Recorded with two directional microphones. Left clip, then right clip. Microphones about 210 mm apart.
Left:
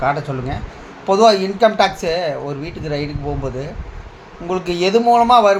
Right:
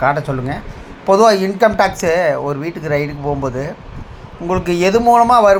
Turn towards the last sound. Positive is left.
turn(degrees=-20)  # may be behind; listen again after turning